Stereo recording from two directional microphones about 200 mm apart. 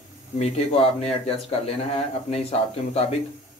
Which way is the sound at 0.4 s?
30° left (ahead or behind).